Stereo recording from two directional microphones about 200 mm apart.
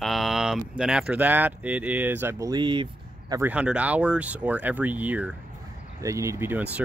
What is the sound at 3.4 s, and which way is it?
Speech, 5° right (ahead or behind).